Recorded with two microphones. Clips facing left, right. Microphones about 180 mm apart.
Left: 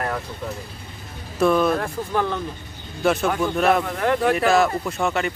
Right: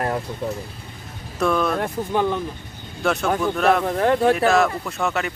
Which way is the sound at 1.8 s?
15° right (ahead or behind).